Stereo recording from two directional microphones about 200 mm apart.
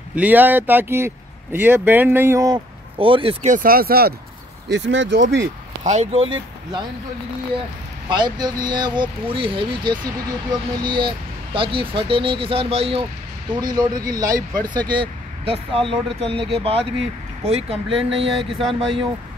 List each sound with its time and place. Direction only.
0.1 s speech: 10° right (ahead or behind); by 3.5 s 25° right (ahead or behind)
3.5 s speech: 45° right (ahead or behind)
4.6 s speech: 65° right (ahead or behind)
5.9 s speech: 35° right (ahead or behind)
8.1 s speech: 20° right (ahead or behind)
18.1 s music: centre (ahead or behind)